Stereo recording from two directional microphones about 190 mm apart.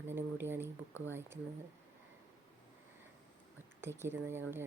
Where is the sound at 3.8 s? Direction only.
15° right (ahead or behind).